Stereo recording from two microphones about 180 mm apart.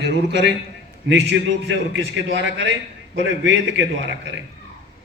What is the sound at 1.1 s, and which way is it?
A man's voice, 90° right.